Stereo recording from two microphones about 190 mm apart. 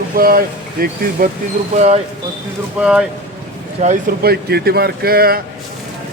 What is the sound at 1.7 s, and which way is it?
Speech, 35° right (ahead or behind).